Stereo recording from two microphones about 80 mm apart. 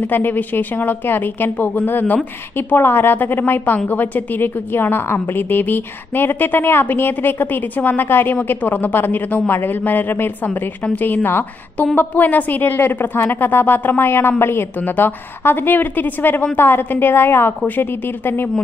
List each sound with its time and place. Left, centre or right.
0.0 s a woman's voice: left